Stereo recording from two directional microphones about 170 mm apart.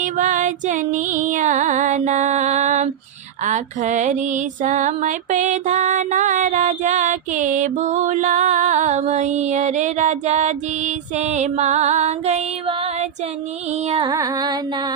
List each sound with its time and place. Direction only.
0.0 s music: 50° right (ahead or behind)
14.1 s music: 20° right (ahead or behind)